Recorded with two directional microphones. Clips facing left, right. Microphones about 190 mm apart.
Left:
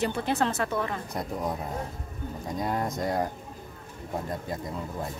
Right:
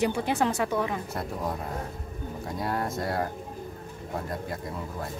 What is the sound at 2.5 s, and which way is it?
Speech, 20° left (ahead or behind).